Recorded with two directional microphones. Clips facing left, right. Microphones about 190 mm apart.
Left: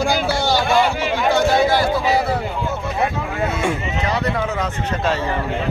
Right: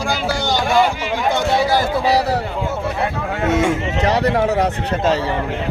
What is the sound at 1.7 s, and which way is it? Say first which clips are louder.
Speech: right 1 dB; 40° right (ahead or behind).